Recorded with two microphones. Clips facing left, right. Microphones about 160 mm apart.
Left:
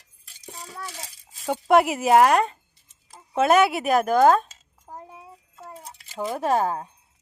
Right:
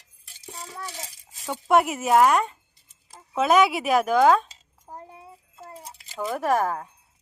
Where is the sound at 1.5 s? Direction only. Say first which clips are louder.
Left 2 dB; 80° left.